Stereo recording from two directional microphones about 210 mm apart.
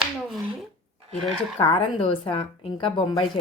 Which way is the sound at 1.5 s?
25° left (ahead or behind).